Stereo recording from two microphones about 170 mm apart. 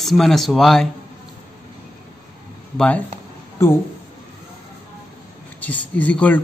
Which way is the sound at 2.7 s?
10° left (ahead or behind).